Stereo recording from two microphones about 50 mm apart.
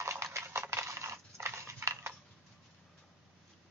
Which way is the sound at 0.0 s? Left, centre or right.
Right.